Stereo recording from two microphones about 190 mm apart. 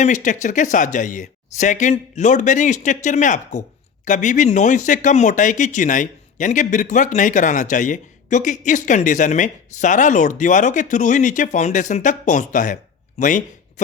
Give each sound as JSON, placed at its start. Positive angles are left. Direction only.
{"t": 0.0, "sound": "speech", "side_deg": 40}